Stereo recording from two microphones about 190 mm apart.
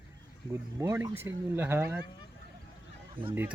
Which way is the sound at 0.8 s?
15° right (ahead or behind).